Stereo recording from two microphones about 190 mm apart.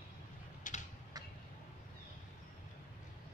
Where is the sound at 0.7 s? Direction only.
45° left (ahead or behind).